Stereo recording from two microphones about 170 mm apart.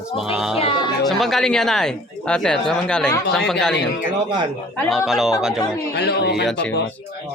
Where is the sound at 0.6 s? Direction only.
25° left (ahead or behind).